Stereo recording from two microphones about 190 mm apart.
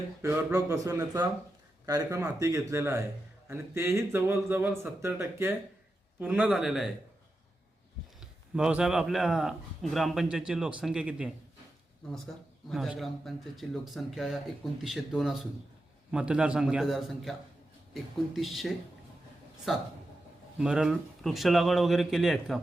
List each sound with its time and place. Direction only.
0.2 s speech: 15° right (ahead or behind)
8.2 s speech: 5° right (ahead or behind)
12.6 s speech: centre (ahead or behind)